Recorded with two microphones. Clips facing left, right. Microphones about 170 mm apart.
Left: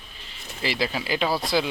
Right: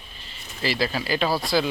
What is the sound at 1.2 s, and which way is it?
Speech, centre (ahead or behind).